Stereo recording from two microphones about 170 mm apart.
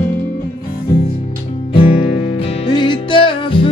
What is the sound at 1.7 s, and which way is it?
Music, 35° left (ahead or behind).